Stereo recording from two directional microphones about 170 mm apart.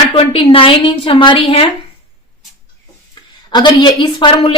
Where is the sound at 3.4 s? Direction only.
25° left (ahead or behind).